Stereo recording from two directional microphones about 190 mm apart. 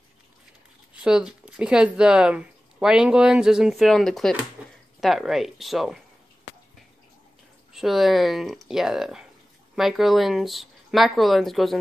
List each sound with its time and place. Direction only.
1.0 s speech: 5° right (ahead or behind)
4.6 s a sound: 5° right (ahead or behind)
5.0 s speech: centre (ahead or behind)
7.7 s speech: centre (ahead or behind)